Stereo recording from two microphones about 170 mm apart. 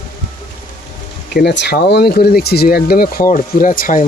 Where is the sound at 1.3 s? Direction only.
75° left (ahead or behind).